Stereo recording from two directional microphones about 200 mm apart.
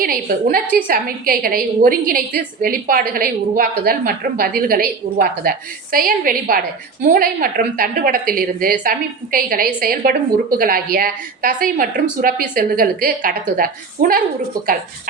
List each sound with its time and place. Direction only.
0.0 s a woman's voice: 45° right (ahead or behind)